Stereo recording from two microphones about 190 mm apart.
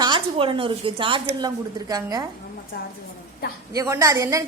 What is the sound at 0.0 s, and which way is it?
A woman's voice, 25° right (ahead or behind).